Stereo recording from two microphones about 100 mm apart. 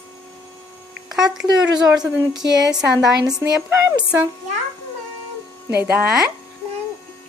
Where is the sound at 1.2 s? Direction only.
5° right (ahead or behind).